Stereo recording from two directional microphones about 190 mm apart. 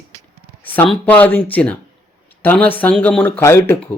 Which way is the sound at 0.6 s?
10° left (ahead or behind).